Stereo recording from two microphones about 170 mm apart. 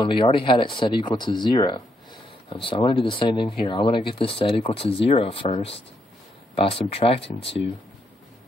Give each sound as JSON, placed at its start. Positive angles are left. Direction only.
{"t": 0.0, "sound": "speech", "side_deg": 30}